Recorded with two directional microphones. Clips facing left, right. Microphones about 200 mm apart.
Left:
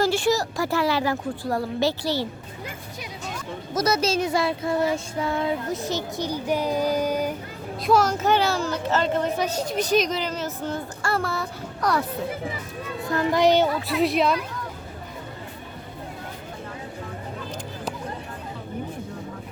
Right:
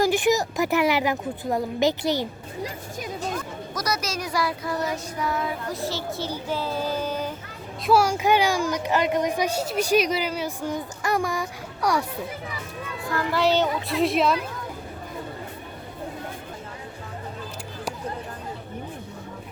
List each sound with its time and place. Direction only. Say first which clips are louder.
0.0 s a child's voice: right 1 dB; 15° right (ahead or behind)
2.6 s speech: right 4 dB; 45° right (ahead or behind)
3.8 s child singing: left 7 dB; 25° left (ahead or behind)
7.9 s a child's voice: even; 10° right (ahead or behind)
13.1 s a child's voice: left 3 dB; 25° left (ahead or behind)
13.8 s a woman's voice: even; centre (ahead or behind)